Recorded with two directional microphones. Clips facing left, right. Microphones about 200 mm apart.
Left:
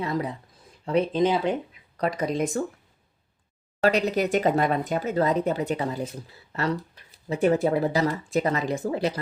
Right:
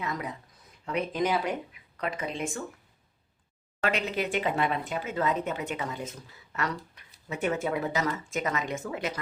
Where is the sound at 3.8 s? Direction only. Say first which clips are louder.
Left 7 dB; 40° left (ahead or behind).